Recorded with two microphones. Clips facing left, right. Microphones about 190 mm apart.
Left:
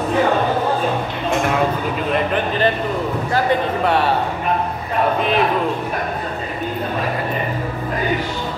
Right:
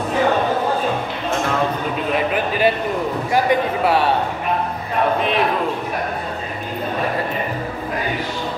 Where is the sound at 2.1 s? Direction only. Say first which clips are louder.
Left 1 dB; 5° right (ahead or behind).